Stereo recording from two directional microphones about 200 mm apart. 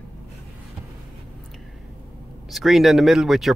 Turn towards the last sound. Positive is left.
turn(degrees=0)  # may be behind; listen again after turning